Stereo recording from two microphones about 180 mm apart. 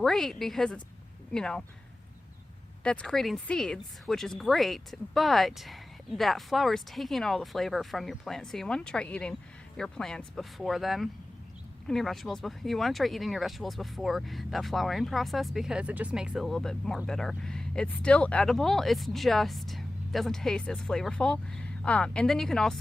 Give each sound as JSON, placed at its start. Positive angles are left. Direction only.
{"t": 0.0, "sound": "speech", "side_deg": 0}
{"t": 2.8, "sound": "speech", "side_deg": 5}